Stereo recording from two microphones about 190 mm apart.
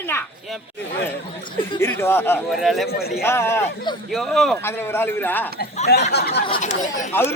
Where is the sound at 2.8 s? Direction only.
55° left (ahead or behind).